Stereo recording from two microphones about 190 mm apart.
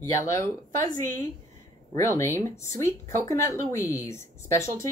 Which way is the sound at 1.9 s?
15° left (ahead or behind).